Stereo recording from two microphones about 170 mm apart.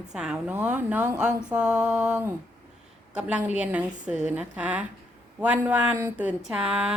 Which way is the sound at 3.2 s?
5° right (ahead or behind).